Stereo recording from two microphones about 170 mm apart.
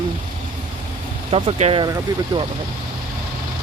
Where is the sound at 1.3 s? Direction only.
35° right (ahead or behind).